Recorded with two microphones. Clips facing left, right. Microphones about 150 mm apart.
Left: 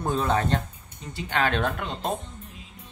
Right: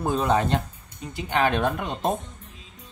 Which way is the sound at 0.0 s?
10° right (ahead or behind).